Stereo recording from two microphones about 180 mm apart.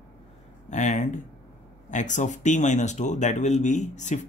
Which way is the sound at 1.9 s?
45° left (ahead or behind).